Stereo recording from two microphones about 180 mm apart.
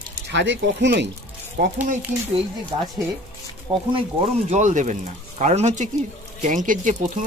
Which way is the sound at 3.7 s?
30° right (ahead or behind).